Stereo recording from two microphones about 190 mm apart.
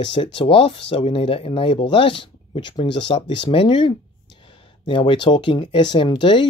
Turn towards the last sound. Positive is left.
turn(degrees=25)  # may be behind; listen again after turning